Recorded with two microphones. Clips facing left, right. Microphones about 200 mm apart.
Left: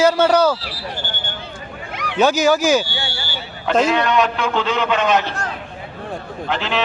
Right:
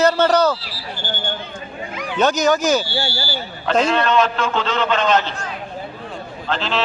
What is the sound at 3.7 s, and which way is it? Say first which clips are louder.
Speech: left 1 dB; centre (ahead or behind).